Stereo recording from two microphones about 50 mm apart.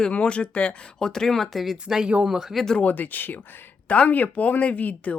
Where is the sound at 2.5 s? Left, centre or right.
Centre.